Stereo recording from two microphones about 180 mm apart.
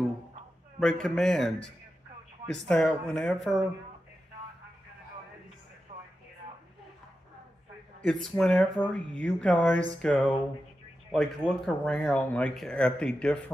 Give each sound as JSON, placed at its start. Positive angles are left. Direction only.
{"t": 0.7, "sound": "speech", "side_deg": 5}
{"t": 2.7, "sound": "speech", "side_deg": 5}
{"t": 5.9, "sound": "a sound", "side_deg": -45}
{"t": 8.0, "sound": "speech", "side_deg": 5}